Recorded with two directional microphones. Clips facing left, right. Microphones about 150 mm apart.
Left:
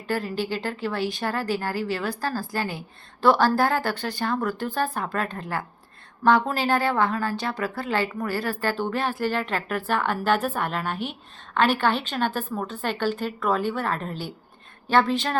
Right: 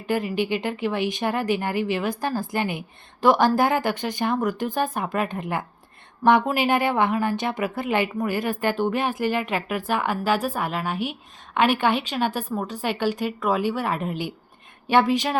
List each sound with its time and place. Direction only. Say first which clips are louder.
0.1 s a woman's voice: right 3 dB; 15° right (ahead or behind)